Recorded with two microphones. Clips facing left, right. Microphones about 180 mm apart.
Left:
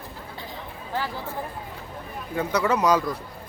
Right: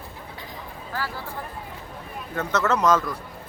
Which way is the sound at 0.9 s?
20° left (ahead or behind).